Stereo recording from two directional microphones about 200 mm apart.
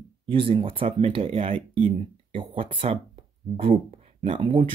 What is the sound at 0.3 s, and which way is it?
Speech, 25° right (ahead or behind).